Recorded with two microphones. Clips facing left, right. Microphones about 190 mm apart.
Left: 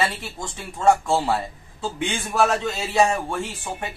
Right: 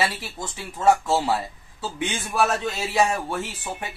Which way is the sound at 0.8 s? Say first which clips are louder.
Left 1 dB; centre (ahead or behind).